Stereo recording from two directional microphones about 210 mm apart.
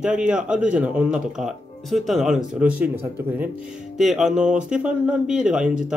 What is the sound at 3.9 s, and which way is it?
Speech, centre (ahead or behind).